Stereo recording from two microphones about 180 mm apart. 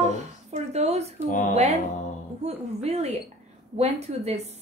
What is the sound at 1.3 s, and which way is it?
Speech, 45° left (ahead or behind).